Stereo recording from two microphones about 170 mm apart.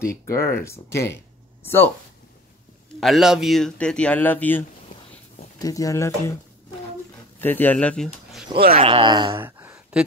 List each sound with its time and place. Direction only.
0.0 s speech: 15° left (ahead or behind)
3.0 s speech: centre (ahead or behind); by 6.3 s 15° left (ahead or behind)
7.3 s speech: 10° left (ahead or behind)
8.7 s speech: 30° right (ahead or behind)
9.4 s a sound: 10° right (ahead or behind)